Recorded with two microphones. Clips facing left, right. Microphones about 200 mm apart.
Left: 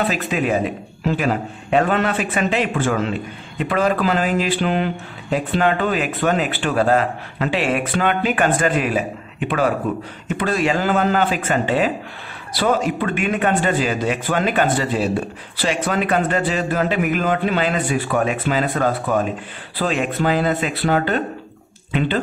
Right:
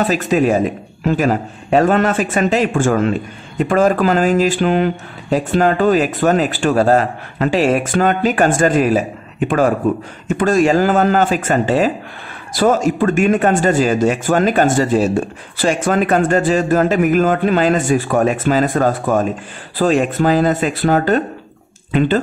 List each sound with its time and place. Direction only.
0.0 s a man's voice: 40° right (ahead or behind)